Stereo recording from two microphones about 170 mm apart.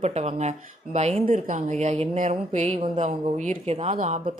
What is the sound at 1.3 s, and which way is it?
Speech, 50° right (ahead or behind).